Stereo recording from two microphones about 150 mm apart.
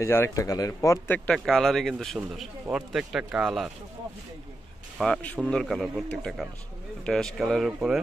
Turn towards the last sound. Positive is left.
turn(degrees=0)  # may be behind; listen again after turning